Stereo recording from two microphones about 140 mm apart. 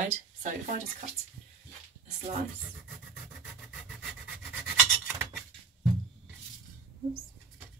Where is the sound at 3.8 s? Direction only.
Centre (ahead or behind).